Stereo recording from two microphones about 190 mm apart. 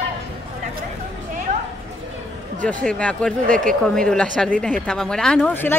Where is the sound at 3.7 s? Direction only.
5° left (ahead or behind).